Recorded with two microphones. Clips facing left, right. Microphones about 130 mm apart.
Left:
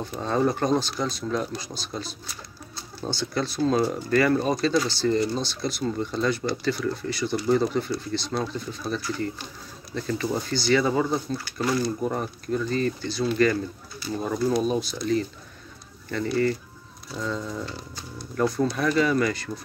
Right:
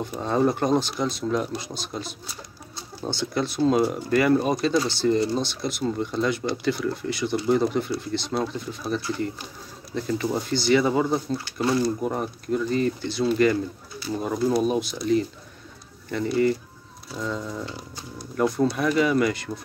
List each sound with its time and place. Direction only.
0.0 s speech: 15° right (ahead or behind)